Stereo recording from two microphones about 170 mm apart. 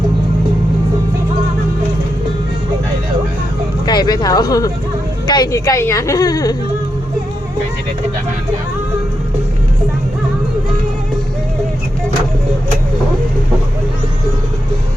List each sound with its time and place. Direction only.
3.8 s speech: 25° left (ahead or behind)